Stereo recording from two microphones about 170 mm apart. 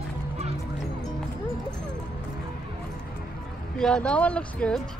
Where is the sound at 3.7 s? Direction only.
5° left (ahead or behind).